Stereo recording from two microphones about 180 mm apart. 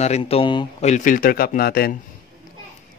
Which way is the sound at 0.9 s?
50° left (ahead or behind).